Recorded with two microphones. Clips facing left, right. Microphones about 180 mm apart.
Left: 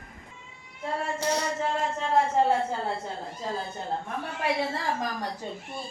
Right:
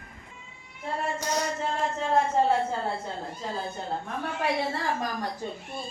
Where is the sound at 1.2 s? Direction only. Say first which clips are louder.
Left 4 dB; 30° left (ahead or behind).